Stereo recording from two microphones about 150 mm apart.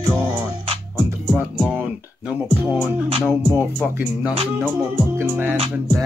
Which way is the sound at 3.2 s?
15° right (ahead or behind).